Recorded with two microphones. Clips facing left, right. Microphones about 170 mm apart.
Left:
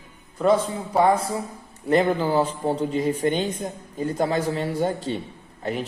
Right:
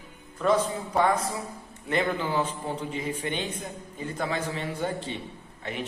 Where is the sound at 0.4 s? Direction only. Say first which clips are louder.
Left 4 dB; 30° left (ahead or behind).